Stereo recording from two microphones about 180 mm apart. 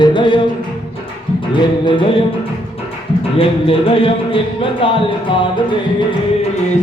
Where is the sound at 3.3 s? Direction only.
30° left (ahead or behind).